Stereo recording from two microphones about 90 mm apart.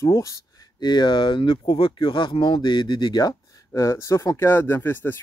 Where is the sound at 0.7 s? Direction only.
55° left (ahead or behind); by 4.5 s 35° left (ahead or behind).